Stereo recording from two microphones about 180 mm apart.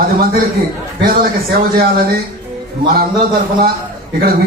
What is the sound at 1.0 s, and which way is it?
A man's voice, 55° right (ahead or behind).